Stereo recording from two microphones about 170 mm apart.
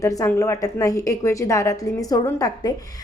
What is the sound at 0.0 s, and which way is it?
A woman's voice, 20° left (ahead or behind).